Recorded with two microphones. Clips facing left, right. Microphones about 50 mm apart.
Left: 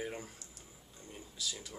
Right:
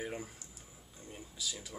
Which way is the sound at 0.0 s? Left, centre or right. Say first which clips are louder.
Right 1 dB; centre.